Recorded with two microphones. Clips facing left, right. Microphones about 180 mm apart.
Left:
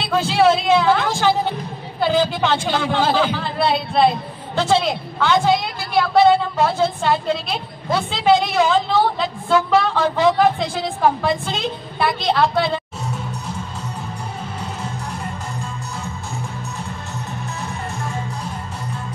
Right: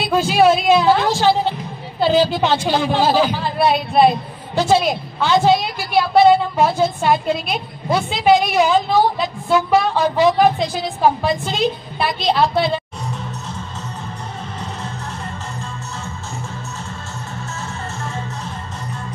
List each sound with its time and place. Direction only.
0.1 s a woman's voice: 15° right (ahead or behind)
2.4 s a woman's voice: 20° right (ahead or behind)
18.0 s music: 10° left (ahead or behind)